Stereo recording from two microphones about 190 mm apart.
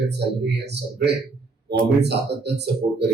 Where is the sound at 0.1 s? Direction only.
60° right (ahead or behind).